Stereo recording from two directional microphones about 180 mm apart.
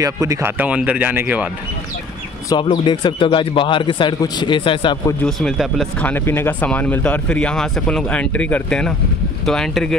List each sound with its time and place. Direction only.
0.0 s speech: 20° right (ahead or behind)
2.5 s speech: 25° left (ahead or behind)
5.2 s speech: centre (ahead or behind)